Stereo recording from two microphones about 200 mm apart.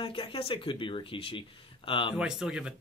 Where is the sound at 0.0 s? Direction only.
25° left (ahead or behind).